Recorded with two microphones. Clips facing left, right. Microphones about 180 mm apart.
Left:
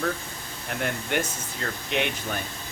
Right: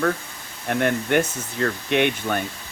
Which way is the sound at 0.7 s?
60° right (ahead or behind).